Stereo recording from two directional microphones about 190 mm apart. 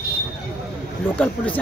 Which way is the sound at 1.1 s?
5° left (ahead or behind).